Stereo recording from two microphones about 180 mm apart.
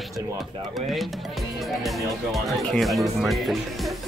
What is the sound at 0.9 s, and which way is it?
Speech, centre (ahead or behind).